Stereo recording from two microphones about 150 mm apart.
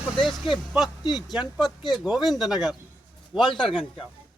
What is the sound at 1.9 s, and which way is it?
A man's voice, 5° right (ahead or behind).